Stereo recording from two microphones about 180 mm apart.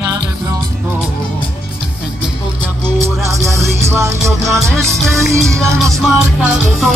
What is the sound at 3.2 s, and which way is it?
Music, 15° right (ahead or behind).